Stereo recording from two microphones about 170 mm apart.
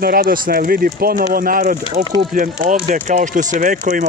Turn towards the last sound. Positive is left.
turn(degrees=-45)  # may be behind; listen again after turning